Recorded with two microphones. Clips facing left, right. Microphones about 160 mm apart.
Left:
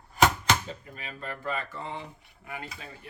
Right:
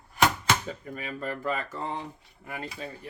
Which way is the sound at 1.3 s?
40° right (ahead or behind).